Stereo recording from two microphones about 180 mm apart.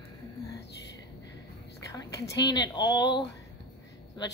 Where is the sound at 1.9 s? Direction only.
20° left (ahead or behind).